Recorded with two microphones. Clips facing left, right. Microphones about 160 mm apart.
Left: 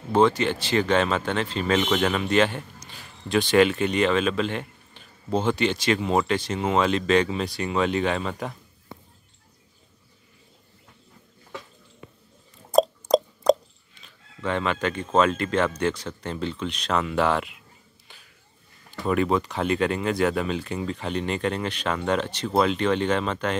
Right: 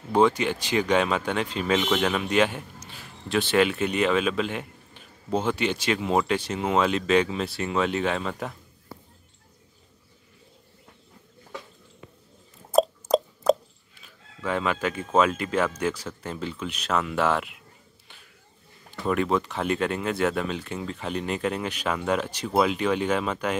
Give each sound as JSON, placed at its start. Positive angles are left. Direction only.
{"t": 0.1, "sound": "speech", "side_deg": -10}
{"t": 12.7, "sound": "a sound", "side_deg": -5}
{"t": 14.0, "sound": "speech", "side_deg": -5}
{"t": 18.9, "sound": "speech", "side_deg": 0}